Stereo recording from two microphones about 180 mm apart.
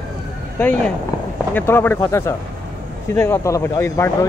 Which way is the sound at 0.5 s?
10° left (ahead or behind).